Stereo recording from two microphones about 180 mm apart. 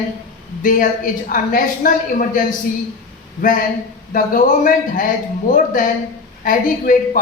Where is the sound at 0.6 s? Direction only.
50° left (ahead or behind).